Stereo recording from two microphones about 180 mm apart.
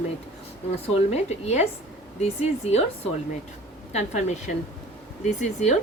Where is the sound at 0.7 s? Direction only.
35° left (ahead or behind).